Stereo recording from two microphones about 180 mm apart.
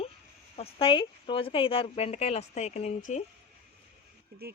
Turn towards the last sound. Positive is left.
turn(degrees=40)  # may be behind; listen again after turning